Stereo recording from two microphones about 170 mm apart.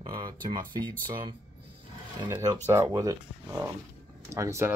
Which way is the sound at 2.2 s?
20° right (ahead or behind).